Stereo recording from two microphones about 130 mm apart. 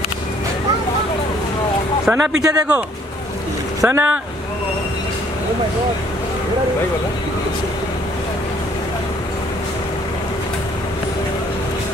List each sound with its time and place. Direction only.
2.0 s speech: 5° right (ahead or behind)
3.8 s speech: 20° right (ahead or behind)